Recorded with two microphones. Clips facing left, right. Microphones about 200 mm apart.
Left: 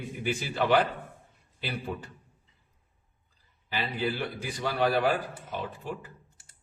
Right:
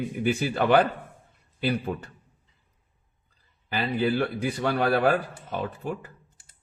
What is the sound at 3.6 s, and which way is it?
A man's voice, 55° right (ahead or behind).